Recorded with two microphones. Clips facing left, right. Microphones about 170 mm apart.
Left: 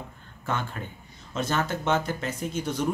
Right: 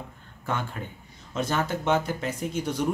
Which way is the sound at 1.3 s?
10° right (ahead or behind).